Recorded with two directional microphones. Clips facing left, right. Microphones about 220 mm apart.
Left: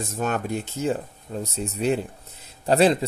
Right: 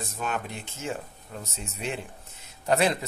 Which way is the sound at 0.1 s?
45° left (ahead or behind).